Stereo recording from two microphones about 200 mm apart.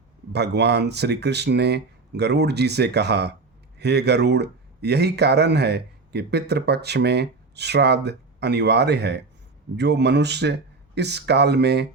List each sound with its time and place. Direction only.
0.3 s speech: 55° right (ahead or behind)